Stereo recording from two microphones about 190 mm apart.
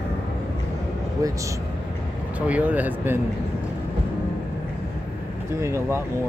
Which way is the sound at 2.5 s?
10° right (ahead or behind).